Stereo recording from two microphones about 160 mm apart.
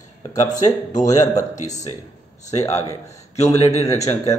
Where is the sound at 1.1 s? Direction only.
25° left (ahead or behind).